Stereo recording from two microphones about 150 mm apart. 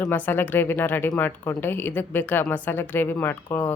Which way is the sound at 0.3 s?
15° left (ahead or behind).